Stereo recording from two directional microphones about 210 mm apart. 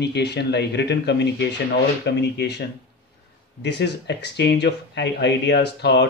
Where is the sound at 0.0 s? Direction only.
55° left (ahead or behind).